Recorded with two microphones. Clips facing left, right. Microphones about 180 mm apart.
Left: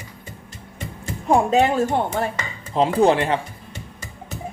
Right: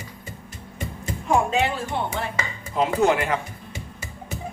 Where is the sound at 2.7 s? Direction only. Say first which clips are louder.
Left 4 dB; 30° left (ahead or behind).